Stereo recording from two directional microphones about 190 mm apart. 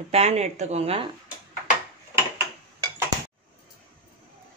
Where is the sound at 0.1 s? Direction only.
35° right (ahead or behind).